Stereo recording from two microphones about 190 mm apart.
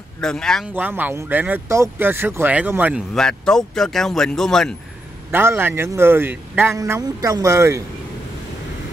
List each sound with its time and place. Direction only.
0.2 s speech: 5° left (ahead or behind)
0.7 s a man's voice: 10° right (ahead or behind)
3.2 s speech: 5° left (ahead or behind)
5.3 s a man's voice: 10° right (ahead or behind)